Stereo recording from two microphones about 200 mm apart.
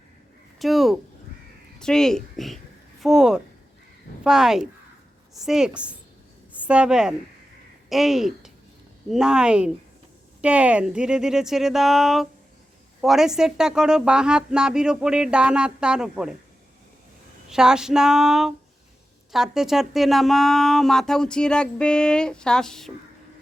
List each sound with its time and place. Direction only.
0.6 s a woman's voice: centre (ahead or behind)
17.5 s speech: 5° right (ahead or behind)